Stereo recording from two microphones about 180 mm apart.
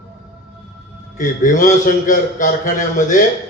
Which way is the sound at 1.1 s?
45° left (ahead or behind).